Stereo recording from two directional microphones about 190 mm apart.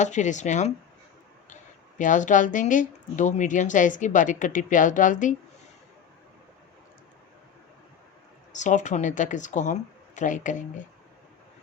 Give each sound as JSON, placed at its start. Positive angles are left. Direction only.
{"t": 0.0, "sound": "speech", "side_deg": 40}
{"t": 2.0, "sound": "a woman's voice", "side_deg": 40}
{"t": 8.5, "sound": "speech", "side_deg": 40}